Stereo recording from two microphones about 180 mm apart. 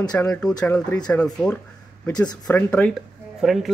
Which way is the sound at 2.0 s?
20° left (ahead or behind).